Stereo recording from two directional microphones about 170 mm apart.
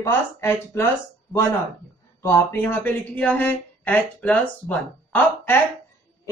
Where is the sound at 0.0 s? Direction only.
15° left (ahead or behind).